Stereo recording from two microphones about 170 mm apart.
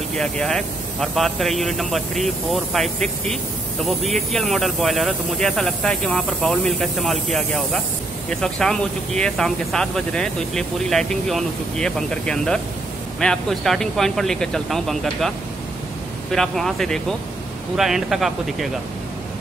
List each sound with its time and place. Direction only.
0.2 s speech: 5° left (ahead or behind)